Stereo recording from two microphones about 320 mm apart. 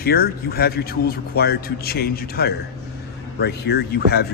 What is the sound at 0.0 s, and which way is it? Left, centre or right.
A man's voice, left.